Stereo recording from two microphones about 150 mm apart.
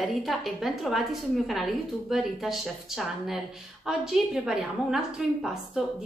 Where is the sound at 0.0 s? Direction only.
Centre (ahead or behind).